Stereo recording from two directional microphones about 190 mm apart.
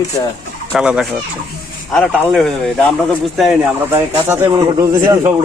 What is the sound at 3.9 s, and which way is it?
Speech, 10° right (ahead or behind).